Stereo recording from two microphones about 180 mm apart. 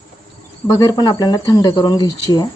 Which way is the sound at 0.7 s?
15° left (ahead or behind).